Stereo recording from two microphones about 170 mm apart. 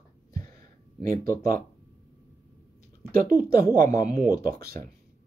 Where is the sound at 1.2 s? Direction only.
55° right (ahead or behind).